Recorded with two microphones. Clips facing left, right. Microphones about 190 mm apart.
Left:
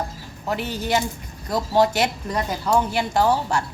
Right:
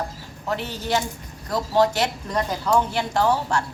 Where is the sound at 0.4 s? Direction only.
10° left (ahead or behind).